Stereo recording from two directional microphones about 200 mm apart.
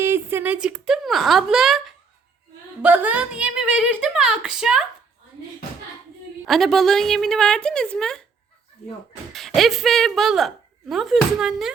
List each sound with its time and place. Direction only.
0.0 s a woman's voice: 10° right (ahead or behind)
6.4 s speech: centre (ahead or behind)
9.6 s speech: centre (ahead or behind)